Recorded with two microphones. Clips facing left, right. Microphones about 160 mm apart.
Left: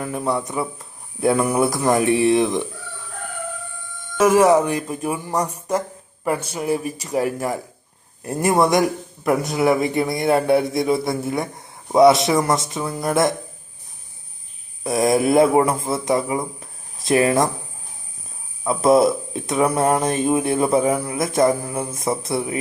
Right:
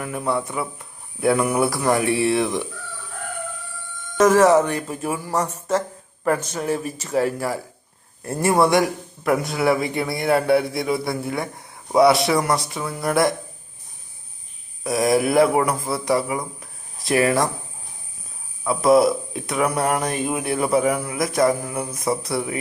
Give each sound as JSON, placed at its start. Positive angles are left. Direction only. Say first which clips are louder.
{"t": 0.0, "sound": "speech", "louder": "left 1 dB", "side_deg": 25}
{"t": 4.2, "sound": "speech", "louder": "even", "side_deg": 10}
{"t": 14.8, "sound": "speech", "louder": "left 2 dB", "side_deg": 25}
{"t": 18.6, "sound": "speech", "louder": "left 1 dB", "side_deg": 25}